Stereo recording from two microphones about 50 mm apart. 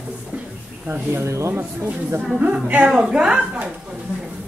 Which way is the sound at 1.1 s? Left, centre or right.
Right.